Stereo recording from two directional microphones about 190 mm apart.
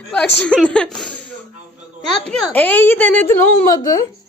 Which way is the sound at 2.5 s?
10° left (ahead or behind).